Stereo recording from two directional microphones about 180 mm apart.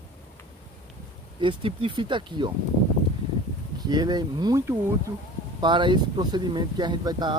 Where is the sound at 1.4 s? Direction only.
30° right (ahead or behind).